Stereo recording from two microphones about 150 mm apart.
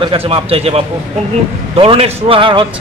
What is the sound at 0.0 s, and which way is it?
Speech, 35° right (ahead or behind).